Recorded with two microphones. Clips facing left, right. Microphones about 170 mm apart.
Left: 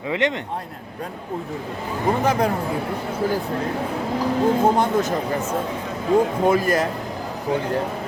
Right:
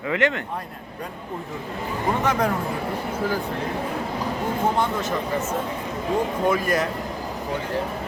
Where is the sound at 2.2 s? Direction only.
35° left (ahead or behind).